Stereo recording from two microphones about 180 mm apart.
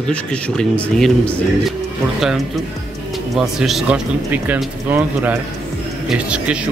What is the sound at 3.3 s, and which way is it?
Speech, centre (ahead or behind).